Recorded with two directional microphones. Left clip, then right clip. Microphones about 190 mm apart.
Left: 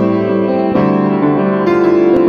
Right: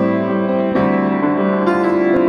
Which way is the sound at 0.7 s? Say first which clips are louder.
Left 3 dB; 5° left (ahead or behind).